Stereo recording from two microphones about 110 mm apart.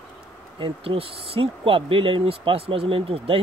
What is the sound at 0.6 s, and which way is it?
Speech, 55° right (ahead or behind).